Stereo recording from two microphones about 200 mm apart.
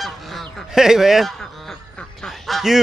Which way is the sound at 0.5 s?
Centre (ahead or behind).